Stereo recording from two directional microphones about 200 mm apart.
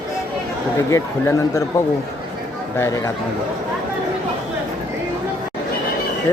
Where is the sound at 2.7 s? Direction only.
15° left (ahead or behind).